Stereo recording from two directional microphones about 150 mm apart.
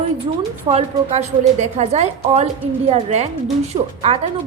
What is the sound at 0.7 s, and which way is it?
A woman's voice, 45° right (ahead or behind).